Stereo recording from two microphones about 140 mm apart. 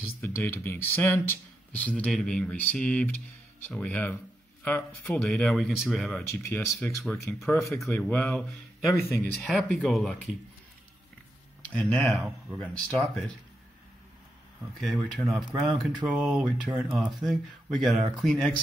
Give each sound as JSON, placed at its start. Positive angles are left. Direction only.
{"t": 0.2, "sound": "speech", "side_deg": 15}
{"t": 6.2, "sound": "speech", "side_deg": 15}
{"t": 7.2, "sound": "speech", "side_deg": 0}
{"t": 9.4, "sound": "speech", "side_deg": 0}
{"t": 11.7, "sound": "speech", "side_deg": 10}
{"t": 14.8, "sound": "speech", "side_deg": 0}
{"t": 15.5, "sound": "speech", "side_deg": -30}
{"t": 16.1, "sound": "speech", "side_deg": -5}